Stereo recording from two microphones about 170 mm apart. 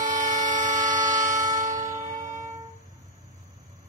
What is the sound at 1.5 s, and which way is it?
Music, 50° right (ahead or behind).